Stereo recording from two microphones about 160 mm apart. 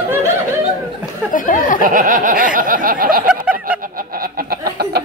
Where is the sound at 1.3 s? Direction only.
55° left (ahead or behind).